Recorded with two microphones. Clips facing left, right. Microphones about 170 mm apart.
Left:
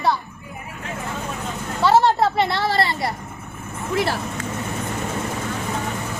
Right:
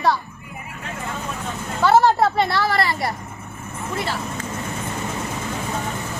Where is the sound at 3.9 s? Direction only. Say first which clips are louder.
Left 5 dB; 70° left (ahead or behind).